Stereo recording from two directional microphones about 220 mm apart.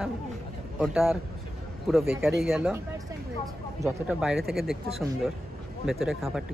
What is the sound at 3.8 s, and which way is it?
Speech, 5° right (ahead or behind).